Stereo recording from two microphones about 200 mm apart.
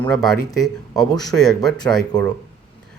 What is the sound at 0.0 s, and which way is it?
Speech, centre (ahead or behind).